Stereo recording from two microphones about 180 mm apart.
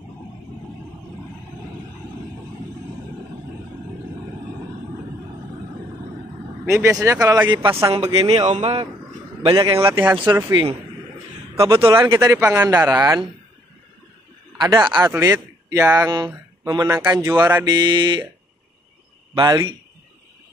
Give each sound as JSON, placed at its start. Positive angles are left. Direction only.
{"t": 6.6, "sound": "speech", "side_deg": -15}
{"t": 12.1, "sound": "a man's voice", "side_deg": -15}
{"t": 14.6, "sound": "speech", "side_deg": -25}
{"t": 19.3, "sound": "speech", "side_deg": -20}